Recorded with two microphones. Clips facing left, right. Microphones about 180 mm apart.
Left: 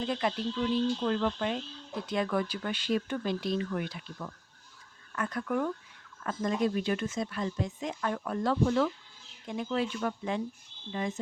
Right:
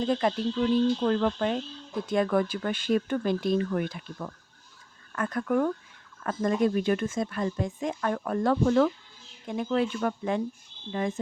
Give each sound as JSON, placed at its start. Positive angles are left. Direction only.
{"t": 0.0, "sound": "speech", "side_deg": -40}